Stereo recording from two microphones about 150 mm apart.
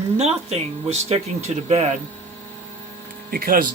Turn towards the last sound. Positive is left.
turn(degrees=-75)  # may be behind; listen again after turning